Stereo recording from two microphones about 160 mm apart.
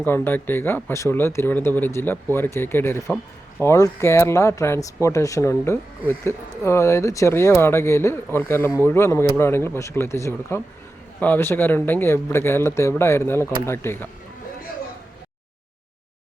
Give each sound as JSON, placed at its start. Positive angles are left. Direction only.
{"t": 0.0, "sound": "speech", "side_deg": 10}